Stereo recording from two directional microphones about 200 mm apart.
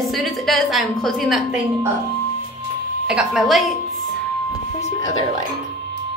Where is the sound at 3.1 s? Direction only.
Centre (ahead or behind).